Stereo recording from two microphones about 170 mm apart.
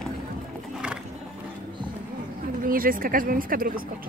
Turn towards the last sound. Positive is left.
turn(degrees=-55)  # may be behind; listen again after turning